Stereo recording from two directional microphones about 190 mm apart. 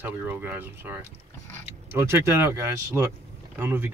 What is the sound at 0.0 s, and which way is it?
Speech, 10° right (ahead or behind).